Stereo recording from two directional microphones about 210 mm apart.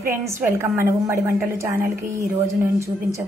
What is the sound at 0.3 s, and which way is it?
A woman's voice, 10° right (ahead or behind).